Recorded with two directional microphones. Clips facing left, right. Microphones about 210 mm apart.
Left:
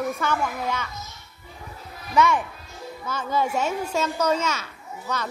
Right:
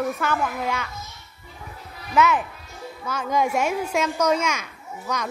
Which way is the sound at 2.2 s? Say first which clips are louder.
Right 1 dB; 5° right (ahead or behind).